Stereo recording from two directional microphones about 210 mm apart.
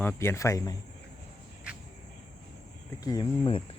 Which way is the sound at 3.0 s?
20° left (ahead or behind).